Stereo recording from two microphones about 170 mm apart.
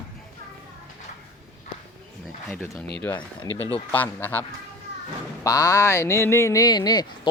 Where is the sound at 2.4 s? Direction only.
10° left (ahead or behind).